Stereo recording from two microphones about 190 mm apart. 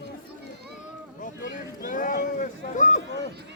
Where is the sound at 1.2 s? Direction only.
45° left (ahead or behind).